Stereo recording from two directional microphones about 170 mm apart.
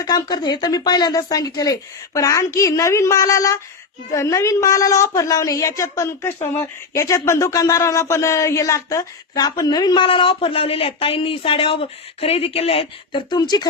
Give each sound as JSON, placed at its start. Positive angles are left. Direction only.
{"t": 0.0, "sound": "speech", "side_deg": 25}